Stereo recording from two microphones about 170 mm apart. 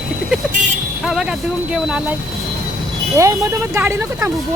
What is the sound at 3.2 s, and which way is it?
Speech, 20° right (ahead or behind).